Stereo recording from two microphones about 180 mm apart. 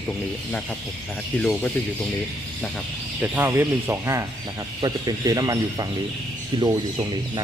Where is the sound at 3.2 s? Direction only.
10° right (ahead or behind).